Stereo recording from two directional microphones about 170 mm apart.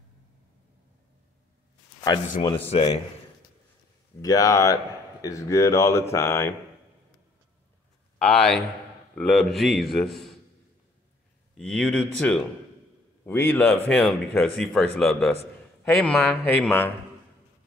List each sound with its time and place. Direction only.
2.5 s speech: 35° left (ahead or behind)
4.2 s speech: 20° left (ahead or behind)
8.2 s a man's voice: centre (ahead or behind)
11.5 s a man's voice: 5° left (ahead or behind)